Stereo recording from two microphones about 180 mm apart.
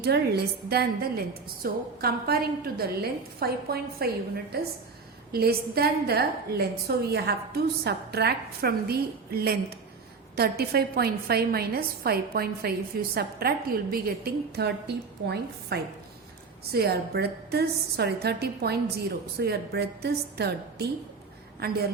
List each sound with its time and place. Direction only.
0.0 s a woman's voice: 60° right (ahead or behind)
15.7 s a woman's voice: 65° right (ahead or behind)